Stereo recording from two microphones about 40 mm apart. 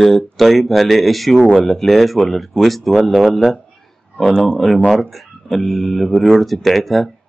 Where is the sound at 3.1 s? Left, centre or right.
Right.